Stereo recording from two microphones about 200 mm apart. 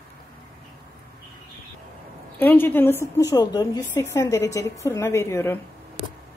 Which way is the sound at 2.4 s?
10° left (ahead or behind).